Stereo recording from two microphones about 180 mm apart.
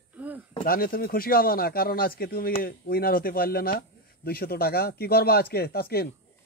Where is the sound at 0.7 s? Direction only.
55° left (ahead or behind).